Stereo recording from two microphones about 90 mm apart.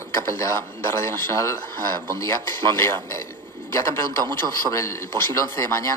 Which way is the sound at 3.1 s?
35° left (ahead or behind).